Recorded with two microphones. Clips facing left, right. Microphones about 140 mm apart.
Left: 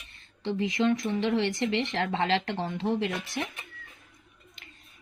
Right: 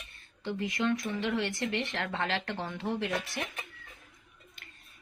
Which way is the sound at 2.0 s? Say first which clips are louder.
Left 6 dB; 65° left (ahead or behind).